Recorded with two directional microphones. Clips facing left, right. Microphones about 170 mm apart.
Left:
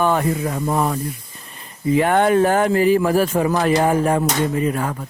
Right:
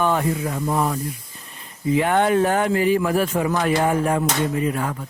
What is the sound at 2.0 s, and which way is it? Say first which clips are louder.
Speech: left 3 dB; 50° left (ahead or behind).